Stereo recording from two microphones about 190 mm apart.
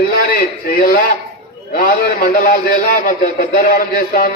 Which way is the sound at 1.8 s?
50° left (ahead or behind).